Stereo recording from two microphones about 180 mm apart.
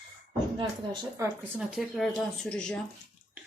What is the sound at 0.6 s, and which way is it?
Speech, 25° right (ahead or behind).